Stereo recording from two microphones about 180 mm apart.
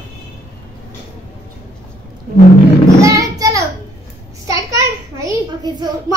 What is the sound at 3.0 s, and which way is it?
Child singing, 20° right (ahead or behind).